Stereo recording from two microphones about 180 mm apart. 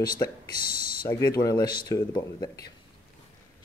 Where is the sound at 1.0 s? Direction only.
15° left (ahead or behind).